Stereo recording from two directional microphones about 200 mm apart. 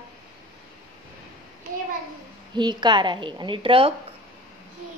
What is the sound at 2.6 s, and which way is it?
Speech, 20° right (ahead or behind).